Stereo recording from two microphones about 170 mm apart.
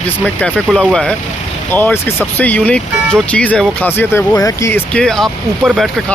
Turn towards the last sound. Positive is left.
turn(degrees=0)  # may be behind; listen again after turning